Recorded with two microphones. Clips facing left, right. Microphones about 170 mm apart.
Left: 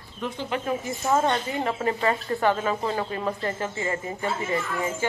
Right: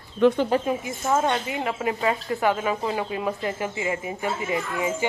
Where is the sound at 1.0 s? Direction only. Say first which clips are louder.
Even; 5° right (ahead or behind).